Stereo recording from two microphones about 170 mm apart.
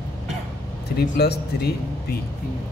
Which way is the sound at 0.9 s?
70° left (ahead or behind).